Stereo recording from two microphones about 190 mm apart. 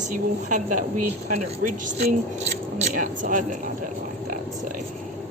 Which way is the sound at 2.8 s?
40° right (ahead or behind).